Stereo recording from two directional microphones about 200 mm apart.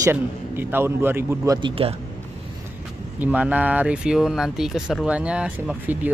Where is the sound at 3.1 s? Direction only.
10° right (ahead or behind).